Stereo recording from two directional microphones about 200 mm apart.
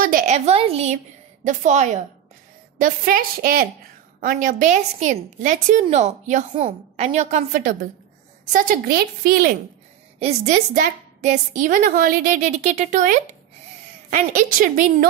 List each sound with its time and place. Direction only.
0.0 s a woman's voice: 40° right (ahead or behind)
10.1 s a woman's voice: 35° right (ahead or behind)